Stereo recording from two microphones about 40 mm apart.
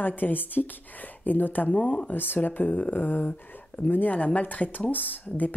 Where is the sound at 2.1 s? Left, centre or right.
Left.